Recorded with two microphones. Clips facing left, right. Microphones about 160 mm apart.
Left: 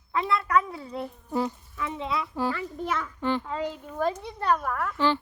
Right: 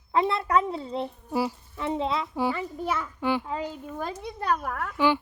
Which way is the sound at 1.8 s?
30° right (ahead or behind).